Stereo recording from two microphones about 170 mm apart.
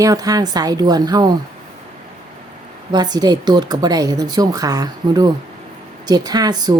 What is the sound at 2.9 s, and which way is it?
Speech, 25° right (ahead or behind).